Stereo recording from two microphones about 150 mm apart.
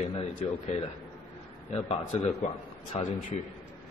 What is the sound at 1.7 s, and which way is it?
A man's voice, 40° left (ahead or behind).